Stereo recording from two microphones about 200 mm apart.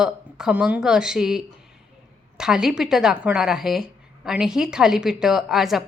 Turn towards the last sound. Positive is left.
turn(degrees=0)  # may be behind; listen again after turning